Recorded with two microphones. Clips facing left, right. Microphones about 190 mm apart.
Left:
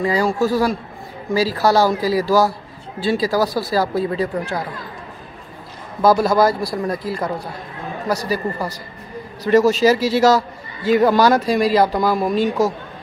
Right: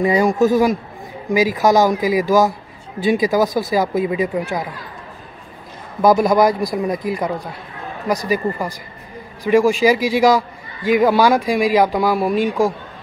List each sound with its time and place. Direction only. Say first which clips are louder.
0.0 s a man's voice: right 3 dB; 20° right (ahead or behind)
6.0 s a man's voice: right 1 dB; 15° right (ahead or behind)